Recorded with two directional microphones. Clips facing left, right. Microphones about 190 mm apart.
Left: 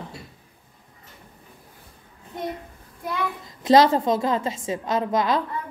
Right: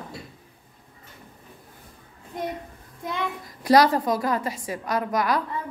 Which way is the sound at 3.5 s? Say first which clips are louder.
Left 2 dB; 25° left (ahead or behind).